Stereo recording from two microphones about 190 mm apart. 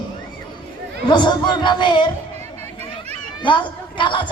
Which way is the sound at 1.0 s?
25° left (ahead or behind).